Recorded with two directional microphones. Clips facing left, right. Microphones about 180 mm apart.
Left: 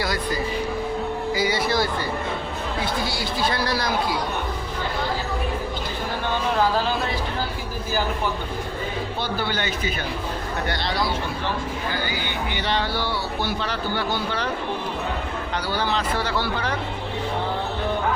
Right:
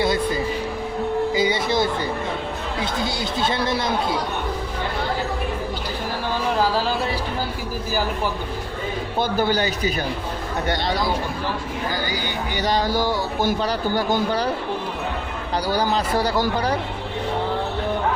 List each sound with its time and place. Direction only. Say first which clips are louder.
1.3 s speech: right 2 dB; 20° right (ahead or behind)
9.1 s speech: right 9 dB; 45° right (ahead or behind)
12.5 s a man's voice: right 5 dB; 40° right (ahead or behind)
15.5 s a man's voice: right 4 dB; 40° right (ahead or behind)